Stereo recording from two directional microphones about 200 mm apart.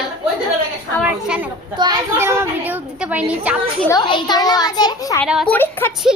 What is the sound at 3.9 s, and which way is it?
A woman's voice, 20° left (ahead or behind).